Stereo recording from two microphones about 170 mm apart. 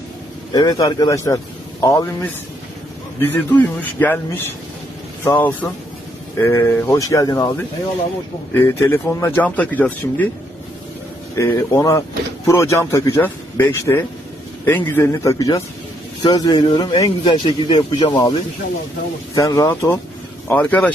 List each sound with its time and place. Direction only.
0.5 s speech: 20° left (ahead or behind)
5.2 s speech: 10° left (ahead or behind)
11.3 s speech: 20° left (ahead or behind)